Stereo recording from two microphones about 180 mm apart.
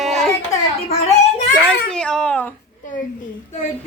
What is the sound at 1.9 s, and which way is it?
Speech, 5° left (ahead or behind).